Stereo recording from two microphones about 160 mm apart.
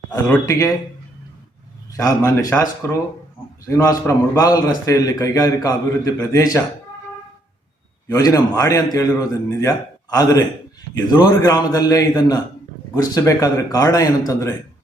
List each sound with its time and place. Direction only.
0.1 s a man's voice: 20° left (ahead or behind)
2.0 s a man's voice: 20° left (ahead or behind)
3.7 s a man's voice: 20° left (ahead or behind)
8.0 s a man's voice: 20° left (ahead or behind)